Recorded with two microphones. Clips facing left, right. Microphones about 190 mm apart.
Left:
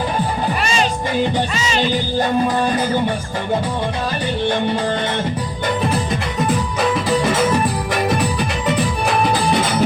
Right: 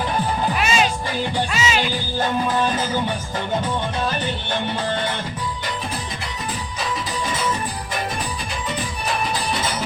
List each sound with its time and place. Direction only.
0.6 s music: 5° right (ahead or behind)
1.5 s speech: 5° right (ahead or behind)
6.7 s music: 65° left (ahead or behind)